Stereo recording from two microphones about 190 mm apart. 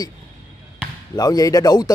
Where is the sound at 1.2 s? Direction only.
20° left (ahead or behind).